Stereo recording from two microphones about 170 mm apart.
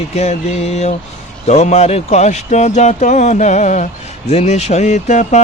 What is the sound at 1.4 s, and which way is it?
Speech, 40° left (ahead or behind).